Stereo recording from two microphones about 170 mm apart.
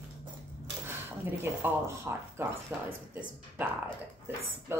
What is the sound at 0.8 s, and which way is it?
Speech, 10° right (ahead or behind).